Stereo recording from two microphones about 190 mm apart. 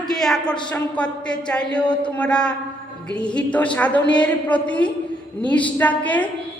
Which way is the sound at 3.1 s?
5° left (ahead or behind).